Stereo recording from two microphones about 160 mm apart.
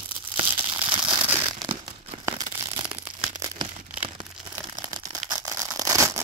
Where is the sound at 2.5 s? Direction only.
35° right (ahead or behind).